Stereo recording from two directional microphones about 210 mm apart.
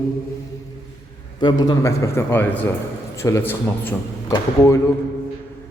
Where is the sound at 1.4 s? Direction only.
20° left (ahead or behind).